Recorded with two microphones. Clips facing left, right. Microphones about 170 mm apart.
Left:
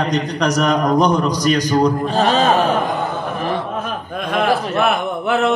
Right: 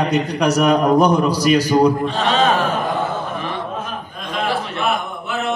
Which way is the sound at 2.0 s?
40° left (ahead or behind).